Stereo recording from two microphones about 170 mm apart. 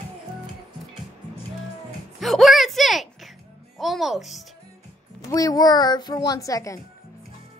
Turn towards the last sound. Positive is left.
turn(degrees=20)  # may be behind; listen again after turning